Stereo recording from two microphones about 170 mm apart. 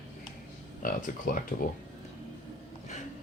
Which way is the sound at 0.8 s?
55° left (ahead or behind).